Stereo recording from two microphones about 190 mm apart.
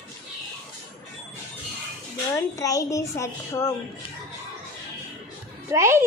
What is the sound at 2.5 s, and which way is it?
A child's voice, 15° left (ahead or behind).